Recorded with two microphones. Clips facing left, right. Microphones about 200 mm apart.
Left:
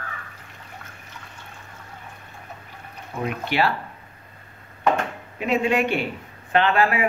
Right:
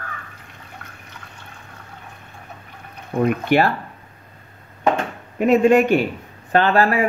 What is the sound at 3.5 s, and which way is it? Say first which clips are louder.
Speech: right 4 dB; 50° right (ahead or behind).